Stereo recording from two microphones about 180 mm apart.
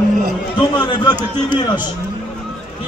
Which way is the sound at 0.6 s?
25° left (ahead or behind).